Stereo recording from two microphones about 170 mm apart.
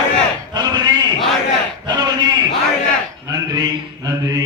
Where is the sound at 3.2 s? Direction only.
20° right (ahead or behind).